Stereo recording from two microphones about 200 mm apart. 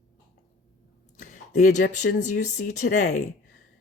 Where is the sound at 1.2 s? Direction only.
40° left (ahead or behind).